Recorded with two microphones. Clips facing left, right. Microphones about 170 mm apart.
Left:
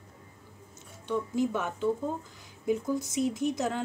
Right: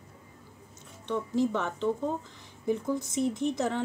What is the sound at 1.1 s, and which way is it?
A woman's voice, 10° left (ahead or behind).